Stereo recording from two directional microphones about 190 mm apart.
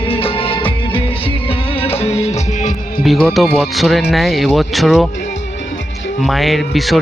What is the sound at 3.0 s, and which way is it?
Speech, centre (ahead or behind).